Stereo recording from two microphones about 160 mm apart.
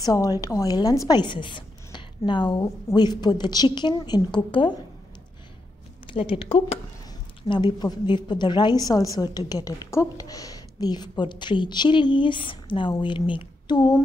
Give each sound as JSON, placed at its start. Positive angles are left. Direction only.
{"t": 0.0, "sound": "a woman's voice", "side_deg": 25}
{"t": 6.0, "sound": "a woman's voice", "side_deg": 35}